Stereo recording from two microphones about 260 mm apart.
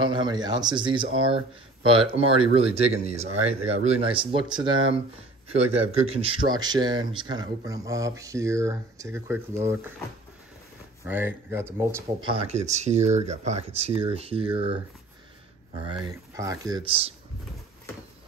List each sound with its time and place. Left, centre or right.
0.0 s speech: centre
6.0 s speech: right
11.1 s speech: centre
16.0 s speech: centre